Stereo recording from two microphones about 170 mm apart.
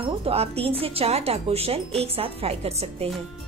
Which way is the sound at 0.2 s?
35° right (ahead or behind).